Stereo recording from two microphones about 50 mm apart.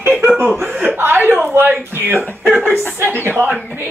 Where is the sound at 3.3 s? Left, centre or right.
Right.